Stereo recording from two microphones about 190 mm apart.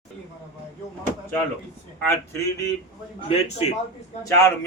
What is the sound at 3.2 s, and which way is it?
Speech, 35° left (ahead or behind).